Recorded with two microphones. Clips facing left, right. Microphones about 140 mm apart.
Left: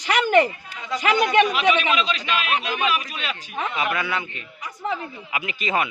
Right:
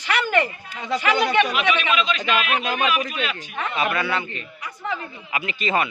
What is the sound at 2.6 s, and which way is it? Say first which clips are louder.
Speech: right 2 dB; 45° right (ahead or behind).